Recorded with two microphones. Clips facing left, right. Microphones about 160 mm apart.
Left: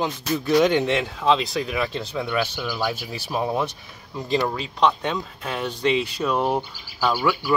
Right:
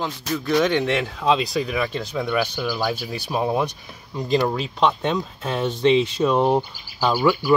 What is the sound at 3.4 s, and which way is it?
Speech, 15° right (ahead or behind).